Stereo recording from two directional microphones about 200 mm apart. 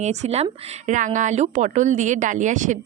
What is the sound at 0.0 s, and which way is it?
Speech, 35° right (ahead or behind).